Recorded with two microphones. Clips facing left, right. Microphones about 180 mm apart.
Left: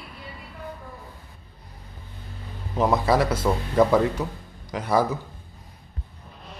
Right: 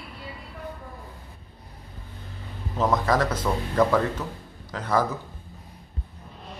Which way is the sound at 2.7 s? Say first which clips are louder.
Left 2 dB; 10° left (ahead or behind).